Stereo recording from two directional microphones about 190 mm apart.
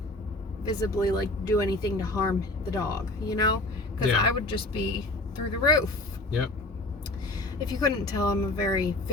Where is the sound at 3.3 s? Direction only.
20° left (ahead or behind).